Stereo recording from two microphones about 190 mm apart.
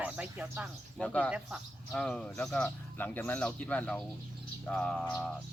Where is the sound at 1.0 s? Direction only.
5° left (ahead or behind).